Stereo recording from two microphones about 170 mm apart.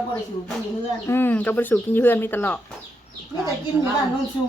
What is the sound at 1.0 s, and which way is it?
Speech, 15° left (ahead or behind).